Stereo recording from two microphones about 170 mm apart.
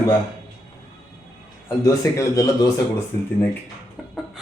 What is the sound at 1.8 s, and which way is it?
Speech, 20° left (ahead or behind).